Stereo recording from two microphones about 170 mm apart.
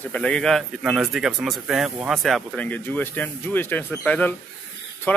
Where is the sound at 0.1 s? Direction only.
5° left (ahead or behind).